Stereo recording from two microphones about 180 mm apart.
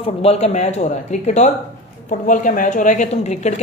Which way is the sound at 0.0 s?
35° left (ahead or behind).